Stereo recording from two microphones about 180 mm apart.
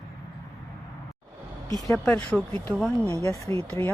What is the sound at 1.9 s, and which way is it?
Speech, 5° left (ahead or behind).